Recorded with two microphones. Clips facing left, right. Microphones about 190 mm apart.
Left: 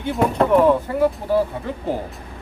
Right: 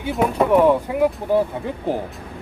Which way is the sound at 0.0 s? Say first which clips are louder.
Even; 5° right (ahead or behind).